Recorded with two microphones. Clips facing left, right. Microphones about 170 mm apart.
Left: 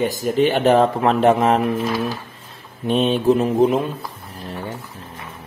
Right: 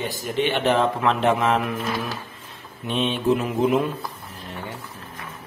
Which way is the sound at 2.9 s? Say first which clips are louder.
Left 5 dB; 40° left (ahead or behind).